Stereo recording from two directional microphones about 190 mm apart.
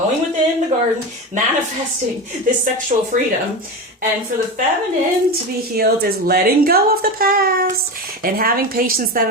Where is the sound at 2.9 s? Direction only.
35° right (ahead or behind).